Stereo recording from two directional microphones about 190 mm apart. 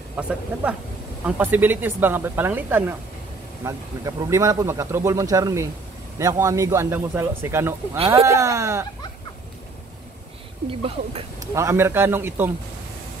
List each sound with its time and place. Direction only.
0.1 s speech: 5° right (ahead or behind)
10.7 s speech: 30° right (ahead or behind)
11.3 s speech: 15° right (ahead or behind)